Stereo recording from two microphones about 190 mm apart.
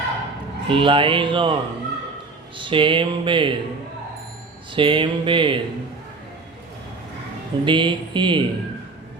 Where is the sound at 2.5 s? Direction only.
25° right (ahead or behind).